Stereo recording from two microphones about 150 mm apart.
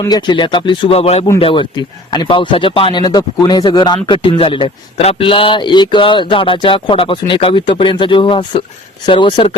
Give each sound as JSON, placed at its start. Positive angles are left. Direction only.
{"t": 0.0, "sound": "speech", "side_deg": 30}